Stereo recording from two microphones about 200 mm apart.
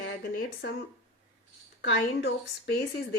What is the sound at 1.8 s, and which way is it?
Speech, 60° left (ahead or behind).